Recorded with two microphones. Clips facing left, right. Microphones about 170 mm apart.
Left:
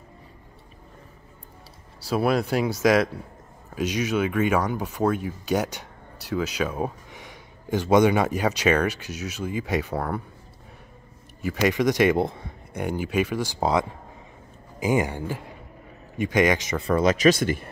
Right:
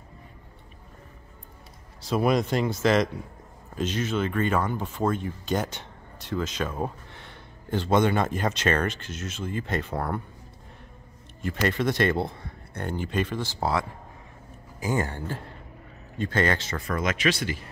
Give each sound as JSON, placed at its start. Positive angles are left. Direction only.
{"t": 2.0, "sound": "speech", "side_deg": 5}
{"t": 11.4, "sound": "speech", "side_deg": 10}
{"t": 16.8, "sound": "speech", "side_deg": 35}